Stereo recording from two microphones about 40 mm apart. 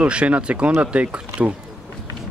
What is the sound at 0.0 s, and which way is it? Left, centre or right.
Speech, right.